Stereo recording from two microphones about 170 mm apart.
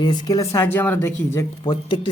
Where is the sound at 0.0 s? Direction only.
25° left (ahead or behind).